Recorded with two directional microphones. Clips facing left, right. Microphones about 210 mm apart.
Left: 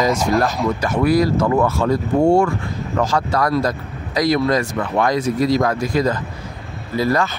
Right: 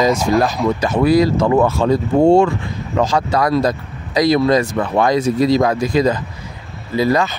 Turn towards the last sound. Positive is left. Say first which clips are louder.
# right 3 dB
turn(degrees=-15)  # may be behind; listen again after turning